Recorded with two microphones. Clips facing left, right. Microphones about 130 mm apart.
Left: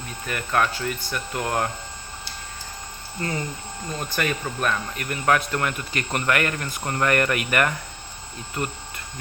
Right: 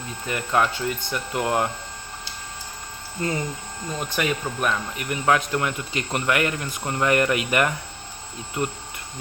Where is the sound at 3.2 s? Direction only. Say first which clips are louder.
Right 2 dB; 20° right (ahead or behind).